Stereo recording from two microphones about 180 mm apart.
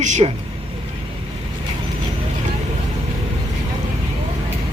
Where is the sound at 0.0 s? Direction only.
40° right (ahead or behind).